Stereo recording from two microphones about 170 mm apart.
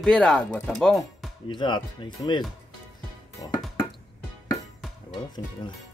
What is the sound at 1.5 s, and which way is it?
Speech, 25° left (ahead or behind).